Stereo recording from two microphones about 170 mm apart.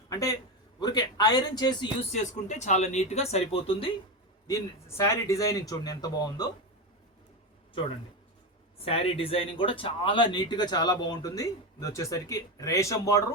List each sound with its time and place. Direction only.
0.1 s a man's voice: 20° left (ahead or behind)
2.1 s speech: 45° left (ahead or behind)
4.4 s speech: 15° left (ahead or behind)
8.8 s speech: 35° left (ahead or behind); by 13.2 s 20° left (ahead or behind)